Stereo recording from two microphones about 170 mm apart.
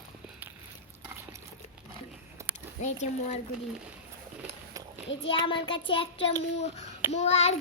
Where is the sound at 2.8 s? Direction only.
40° left (ahead or behind).